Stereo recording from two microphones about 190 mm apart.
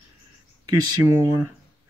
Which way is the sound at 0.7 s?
15° right (ahead or behind).